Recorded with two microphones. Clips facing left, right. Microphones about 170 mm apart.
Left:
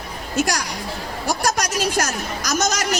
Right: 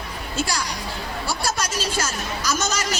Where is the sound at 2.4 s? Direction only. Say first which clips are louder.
Left 3 dB; 40° left (ahead or behind).